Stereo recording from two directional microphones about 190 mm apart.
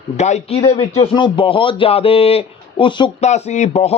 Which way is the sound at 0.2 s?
35° left (ahead or behind).